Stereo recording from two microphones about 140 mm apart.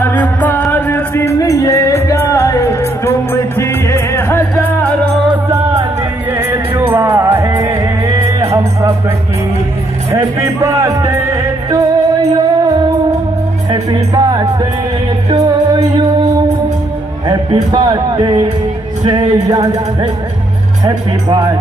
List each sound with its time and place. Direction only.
0.0 s music: 10° left (ahead or behind)
5.5 s music: 25° right (ahead or behind)
10.1 s music: 20° right (ahead or behind)
17.3 s a sound: 30° right (ahead or behind)
19.0 s music: 30° right (ahead or behind)
20.8 s speech: 30° right (ahead or behind)